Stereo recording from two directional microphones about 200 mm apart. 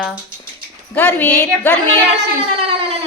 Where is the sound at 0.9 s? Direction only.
10° left (ahead or behind).